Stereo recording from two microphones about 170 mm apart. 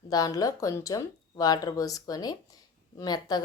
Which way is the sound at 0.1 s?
20° left (ahead or behind).